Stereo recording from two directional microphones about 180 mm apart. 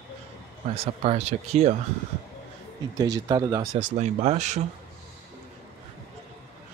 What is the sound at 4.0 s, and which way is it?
Speech, 40° right (ahead or behind).